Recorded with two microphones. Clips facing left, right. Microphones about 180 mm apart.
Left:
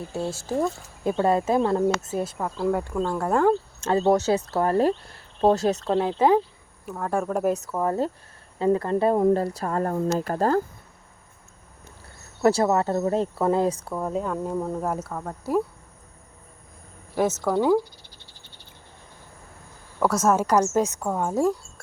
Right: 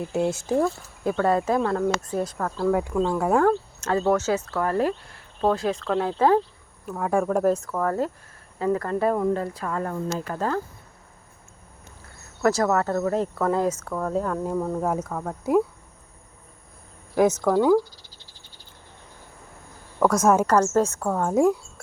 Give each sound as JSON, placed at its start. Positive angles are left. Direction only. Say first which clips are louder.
{"t": 0.1, "sound": "speech", "louder": "right 6 dB", "side_deg": -20}
{"t": 1.0, "sound": "speech", "louder": "even", "side_deg": 20}
{"t": 2.4, "sound": "speech", "louder": "right 3 dB", "side_deg": 5}
{"t": 3.8, "sound": "speech", "louder": "left 2 dB", "side_deg": 30}
{"t": 6.0, "sound": "speech", "louder": "even", "side_deg": 20}
{"t": 6.8, "sound": "speech", "louder": "right 3 dB", "side_deg": 0}
{"t": 7.5, "sound": "speech", "louder": "even", "side_deg": 20}
{"t": 12.4, "sound": "speech", "louder": "left 1 dB", "side_deg": 25}
{"t": 13.9, "sound": "a woman's voice", "louder": "right 1 dB", "side_deg": 10}
{"t": 17.2, "sound": "speech", "louder": "right 3 dB", "side_deg": 5}
{"t": 20.0, "sound": "a woman's voice", "louder": "right 2 dB", "side_deg": 5}
{"t": 21.2, "sound": "speech", "louder": "right 4 dB", "side_deg": 0}